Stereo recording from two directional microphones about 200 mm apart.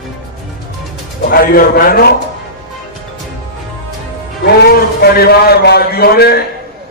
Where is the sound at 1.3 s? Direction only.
45° left (ahead or behind).